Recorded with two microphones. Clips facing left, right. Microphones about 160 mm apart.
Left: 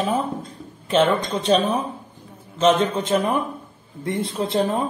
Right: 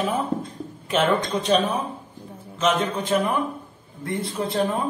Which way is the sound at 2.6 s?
30° left (ahead or behind).